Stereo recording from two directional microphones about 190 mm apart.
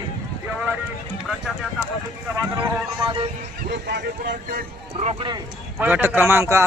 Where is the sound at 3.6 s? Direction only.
60° right (ahead or behind).